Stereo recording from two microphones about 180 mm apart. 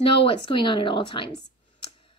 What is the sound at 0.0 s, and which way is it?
Speech, 30° left (ahead or behind).